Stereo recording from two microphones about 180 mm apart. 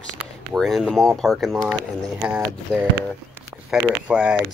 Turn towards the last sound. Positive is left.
turn(degrees=-5)  # may be behind; listen again after turning